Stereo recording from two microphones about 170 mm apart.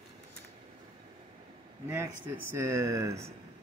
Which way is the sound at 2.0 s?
15° right (ahead or behind).